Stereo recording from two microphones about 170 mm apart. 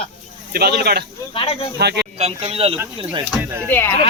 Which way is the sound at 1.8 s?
75° right (ahead or behind).